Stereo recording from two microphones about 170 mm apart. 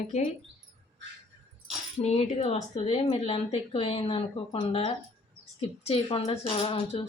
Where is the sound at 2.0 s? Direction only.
35° left (ahead or behind).